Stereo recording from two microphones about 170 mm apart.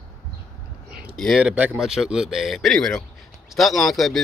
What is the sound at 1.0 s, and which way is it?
Speech, centre (ahead or behind).